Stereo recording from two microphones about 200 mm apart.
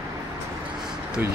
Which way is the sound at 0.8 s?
5° right (ahead or behind).